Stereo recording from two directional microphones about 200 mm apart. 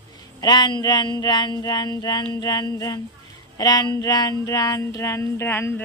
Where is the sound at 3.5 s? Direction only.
20° left (ahead or behind).